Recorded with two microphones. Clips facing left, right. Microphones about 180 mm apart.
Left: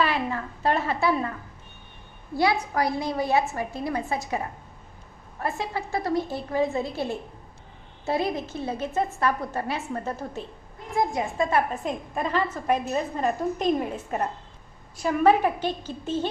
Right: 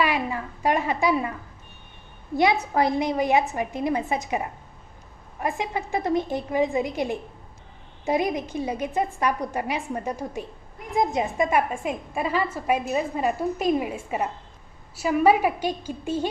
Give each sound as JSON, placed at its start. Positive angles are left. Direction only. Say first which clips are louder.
{"t": 0.0, "sound": "a woman's voice", "louder": "right 1 dB", "side_deg": -10}
{"t": 2.3, "sound": "a woman's voice", "louder": "right 2 dB", "side_deg": -20}
{"t": 5.4, "sound": "a woman's voice", "louder": "right 2 dB", "side_deg": -15}